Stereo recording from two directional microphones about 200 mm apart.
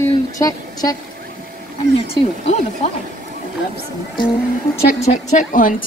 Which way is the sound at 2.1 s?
35° left (ahead or behind).